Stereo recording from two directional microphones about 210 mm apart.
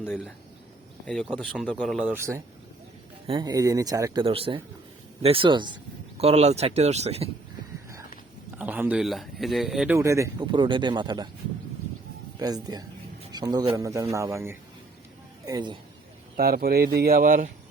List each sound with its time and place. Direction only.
0.0 s speech: 5° right (ahead or behind)
2.1 s speech: 10° right (ahead or behind); by 7.3 s 30° right (ahead or behind)
8.5 s speech: 10° right (ahead or behind)
12.4 s speech: 20° right (ahead or behind)
16.4 s speech: 45° right (ahead or behind)